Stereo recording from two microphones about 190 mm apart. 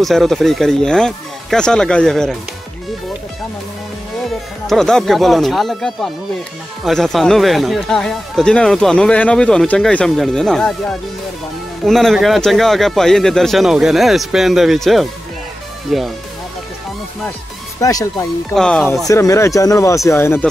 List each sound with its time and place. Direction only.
0.0 s speech: centre (ahead or behind)
4.6 s speech: 5° left (ahead or behind)
17.7 s speech: 15° left (ahead or behind)
18.5 s speech: 5° left (ahead or behind)
19.0 s speech: 15° left (ahead or behind)